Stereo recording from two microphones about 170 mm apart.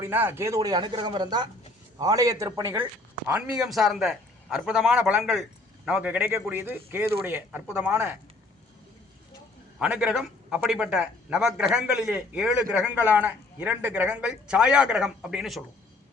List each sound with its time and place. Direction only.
0.0 s speech: 10° right (ahead or behind)
3.2 s speech: 5° right (ahead or behind)
9.7 s speech: 5° right (ahead or behind)